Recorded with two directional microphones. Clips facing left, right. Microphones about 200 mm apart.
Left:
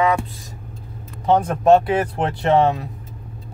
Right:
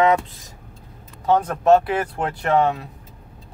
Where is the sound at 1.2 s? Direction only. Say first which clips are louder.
Left 2 dB; 20° left (ahead or behind).